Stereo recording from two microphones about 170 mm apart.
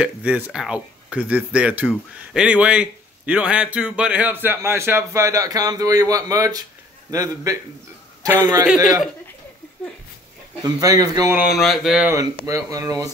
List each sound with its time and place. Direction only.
0.0 s a man's voice: 5° right (ahead or behind)
10.6 s speech: 20° right (ahead or behind)
11.5 s speech: centre (ahead or behind)
12.4 s speech: 20° right (ahead or behind)